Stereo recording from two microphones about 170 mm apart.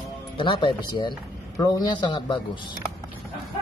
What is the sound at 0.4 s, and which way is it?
Speech, 30° left (ahead or behind).